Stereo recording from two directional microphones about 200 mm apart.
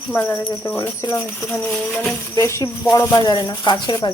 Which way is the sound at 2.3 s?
15° left (ahead or behind).